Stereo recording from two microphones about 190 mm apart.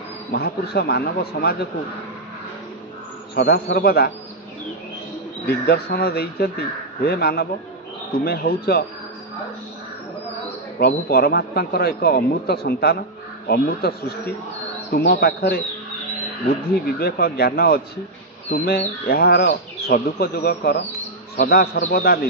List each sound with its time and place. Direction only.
0.3 s a man's voice: 55° left (ahead or behind)
3.3 s a man's voice: 55° left (ahead or behind)
5.7 s a man's voice: 55° left (ahead or behind)
10.8 s a man's voice: 55° left (ahead or behind)
16.8 s speech: 55° left (ahead or behind)
19.0 s a man's voice: 55° left (ahead or behind)